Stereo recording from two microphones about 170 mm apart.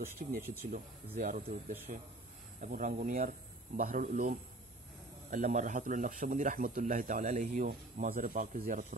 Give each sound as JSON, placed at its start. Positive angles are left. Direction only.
{"t": 0.2, "sound": "a man's voice", "side_deg": -50}